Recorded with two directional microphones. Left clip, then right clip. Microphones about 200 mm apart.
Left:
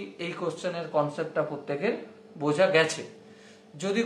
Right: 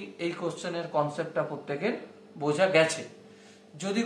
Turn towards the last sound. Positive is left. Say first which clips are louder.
# left 3 dB
turn(degrees=30)  # may be behind; listen again after turning